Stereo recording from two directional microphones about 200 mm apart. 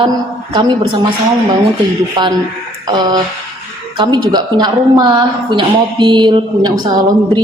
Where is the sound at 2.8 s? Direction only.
20° right (ahead or behind).